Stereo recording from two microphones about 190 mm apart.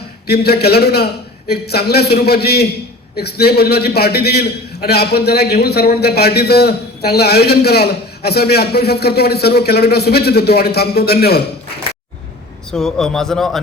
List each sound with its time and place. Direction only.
0.3 s a man's voice: 55° left (ahead or behind)
12.7 s a man's voice: centre (ahead or behind)